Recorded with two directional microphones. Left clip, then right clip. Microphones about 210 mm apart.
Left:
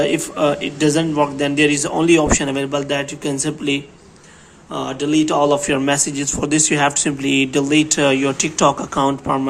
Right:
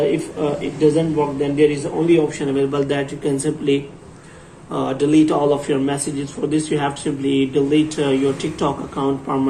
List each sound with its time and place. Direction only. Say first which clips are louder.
0.0 s a man's voice: left 2 dB; 40° left (ahead or behind); by 3.3 s 25° left (ahead or behind)
4.7 s a man's voice: right 2 dB; 20° left (ahead or behind)